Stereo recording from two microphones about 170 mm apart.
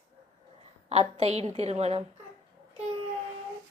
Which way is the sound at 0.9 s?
40° right (ahead or behind).